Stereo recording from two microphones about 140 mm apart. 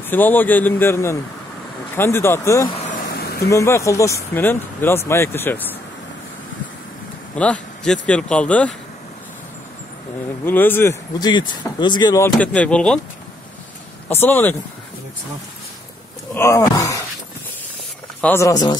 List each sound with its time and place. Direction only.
0.1 s speech: 15° left (ahead or behind)
2.9 s vehicle: 85° left
3.4 s speech: 20° left (ahead or behind)
7.3 s a man's voice: 10° left (ahead or behind)
10.4 s speech: 15° left (ahead or behind)
11.1 s speech: 30° left (ahead or behind)
12.2 s speech: 10° left (ahead or behind)
14.0 s speech: 15° left (ahead or behind)
16.3 s speech: 20° left (ahead or behind)
18.2 s speech: 15° left (ahead or behind)
18.5 s speech: 30° left (ahead or behind)